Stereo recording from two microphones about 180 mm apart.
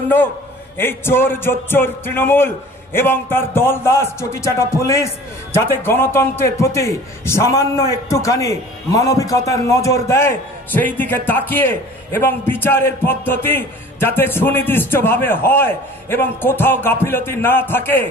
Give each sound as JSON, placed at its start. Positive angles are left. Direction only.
{"t": 0.7, "sound": "speech", "side_deg": 10}